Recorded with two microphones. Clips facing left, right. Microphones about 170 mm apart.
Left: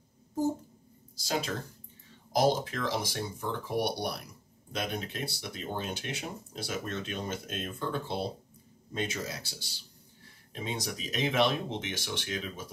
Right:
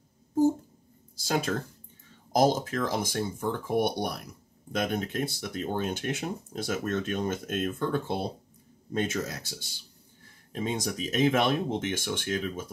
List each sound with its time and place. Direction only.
1.1 s speech: 50° right (ahead or behind)